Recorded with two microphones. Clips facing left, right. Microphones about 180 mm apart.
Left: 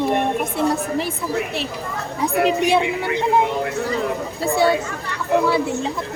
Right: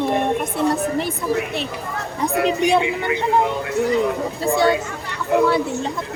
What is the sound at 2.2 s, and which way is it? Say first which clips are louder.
Speech: even; 5° left (ahead or behind).